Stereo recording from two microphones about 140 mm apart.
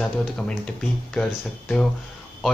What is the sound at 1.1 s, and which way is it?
Speech, 5° left (ahead or behind).